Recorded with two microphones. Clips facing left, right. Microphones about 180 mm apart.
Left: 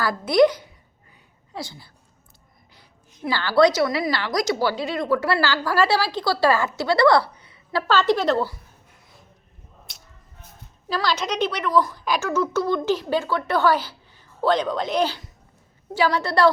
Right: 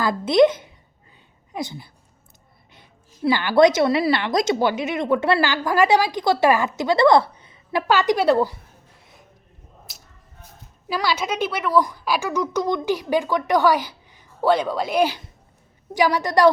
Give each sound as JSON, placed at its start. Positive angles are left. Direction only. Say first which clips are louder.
{"t": 0.0, "sound": "a woman's voice", "louder": "right 1 dB", "side_deg": -20}
{"t": 3.2, "sound": "a woman's voice", "louder": "right 2 dB", "side_deg": -20}
{"t": 9.9, "sound": "a sound", "louder": "right 1 dB", "side_deg": -5}
{"t": 10.8, "sound": "a woman's voice", "louder": "right 1 dB", "side_deg": -10}